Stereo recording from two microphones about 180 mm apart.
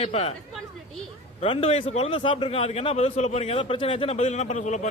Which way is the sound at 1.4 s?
30° left (ahead or behind).